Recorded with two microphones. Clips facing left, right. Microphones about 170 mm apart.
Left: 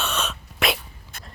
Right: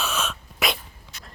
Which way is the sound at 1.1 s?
50° left (ahead or behind).